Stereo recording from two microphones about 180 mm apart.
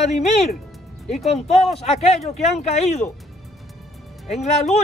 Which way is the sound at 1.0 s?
Centre (ahead or behind).